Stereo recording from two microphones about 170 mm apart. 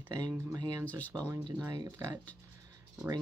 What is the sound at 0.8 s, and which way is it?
Speech, 10° left (ahead or behind).